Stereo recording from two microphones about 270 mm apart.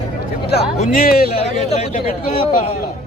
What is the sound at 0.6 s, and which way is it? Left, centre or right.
Speech, left.